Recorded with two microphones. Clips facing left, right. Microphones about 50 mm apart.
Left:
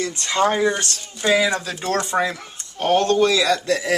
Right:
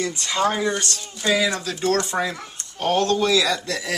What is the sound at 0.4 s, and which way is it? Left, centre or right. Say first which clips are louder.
Speech: left 3 dB; centre.